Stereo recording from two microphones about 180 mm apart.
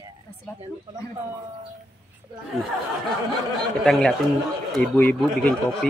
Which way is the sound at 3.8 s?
5° left (ahead or behind).